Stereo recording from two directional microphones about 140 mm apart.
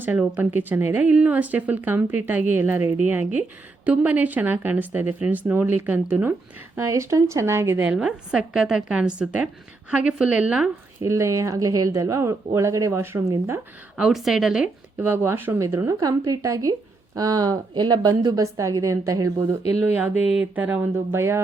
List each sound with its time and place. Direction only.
0.0 s a woman's voice: 10° right (ahead or behind)
11.0 s speech: 20° right (ahead or behind)
13.9 s speech: 5° right (ahead or behind)
14.9 s speech: 15° right (ahead or behind)
19.7 s a woman's voice: 15° right (ahead or behind)